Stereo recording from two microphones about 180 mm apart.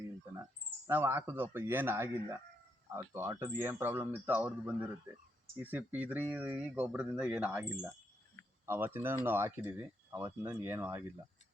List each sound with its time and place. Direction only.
0.9 s speech: 10° right (ahead or behind)